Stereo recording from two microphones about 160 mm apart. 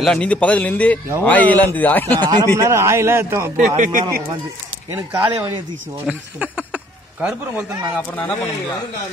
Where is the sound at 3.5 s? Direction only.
55° right (ahead or behind).